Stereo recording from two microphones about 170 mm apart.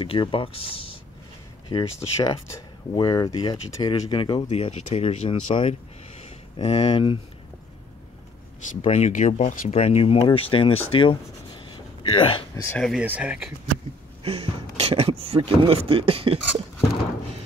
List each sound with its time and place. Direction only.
0.0 s speech: 30° left (ahead or behind)
8.6 s speech: 40° left (ahead or behind)
11.7 s a sound: 30° left (ahead or behind)
12.6 s speech: 5° left (ahead or behind)
13.0 s speech: 10° right (ahead or behind)
14.2 s speech: 35° right (ahead or behind)